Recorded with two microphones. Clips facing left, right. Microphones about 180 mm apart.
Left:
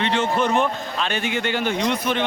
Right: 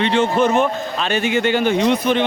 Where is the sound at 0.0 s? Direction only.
10° right (ahead or behind).